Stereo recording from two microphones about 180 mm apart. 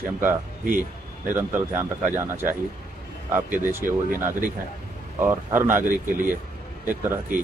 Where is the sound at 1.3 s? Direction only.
10° right (ahead or behind).